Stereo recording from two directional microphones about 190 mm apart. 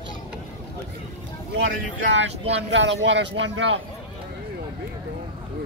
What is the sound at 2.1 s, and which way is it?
Speech, 70° right (ahead or behind).